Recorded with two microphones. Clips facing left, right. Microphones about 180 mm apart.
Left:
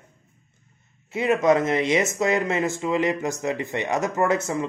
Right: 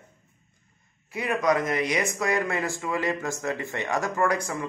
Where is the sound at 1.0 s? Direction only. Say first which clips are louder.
Left 5 dB; 25° left (ahead or behind).